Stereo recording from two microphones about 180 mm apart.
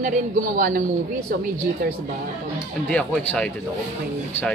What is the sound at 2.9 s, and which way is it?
Speech, 5° left (ahead or behind).